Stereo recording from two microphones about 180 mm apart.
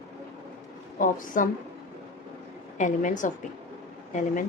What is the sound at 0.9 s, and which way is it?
Speech, 50° left (ahead or behind).